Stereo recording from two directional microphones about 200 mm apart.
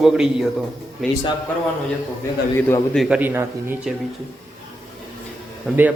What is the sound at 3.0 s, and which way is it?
Speech, 5° right (ahead or behind).